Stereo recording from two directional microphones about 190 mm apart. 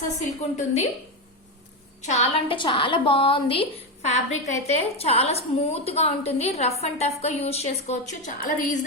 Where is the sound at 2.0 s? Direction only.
30° left (ahead or behind).